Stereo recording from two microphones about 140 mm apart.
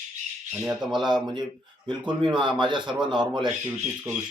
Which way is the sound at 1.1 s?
35° right (ahead or behind).